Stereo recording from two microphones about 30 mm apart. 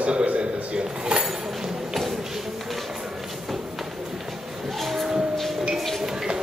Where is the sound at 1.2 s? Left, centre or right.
Centre.